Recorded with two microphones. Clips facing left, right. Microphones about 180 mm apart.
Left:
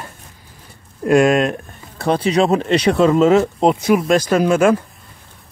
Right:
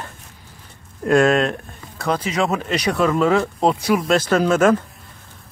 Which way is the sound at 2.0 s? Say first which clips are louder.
Left 5 dB; 30° left (ahead or behind).